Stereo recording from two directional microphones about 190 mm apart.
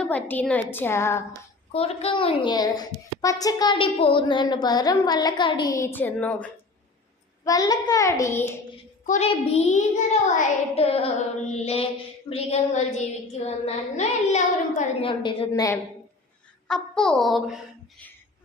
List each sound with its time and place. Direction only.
0.0 s a woman's voice: 10° left (ahead or behind)
1.7 s a child's voice: 30° left (ahead or behind); by 6.5 s 5° left (ahead or behind)
7.4 s a woman's voice: 20° left (ahead or behind)
9.0 s a child's voice: 35° left (ahead or behind)
15.2 s a child's voice: 25° left (ahead or behind)
16.6 s a child's voice: 5° left (ahead or behind)